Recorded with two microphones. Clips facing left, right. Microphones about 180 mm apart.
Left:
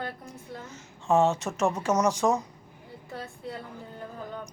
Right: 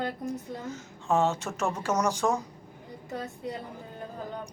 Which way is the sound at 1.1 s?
15° left (ahead or behind).